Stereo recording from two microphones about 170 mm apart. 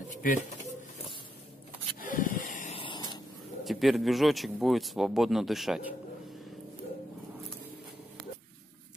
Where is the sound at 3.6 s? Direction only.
Centre (ahead or behind).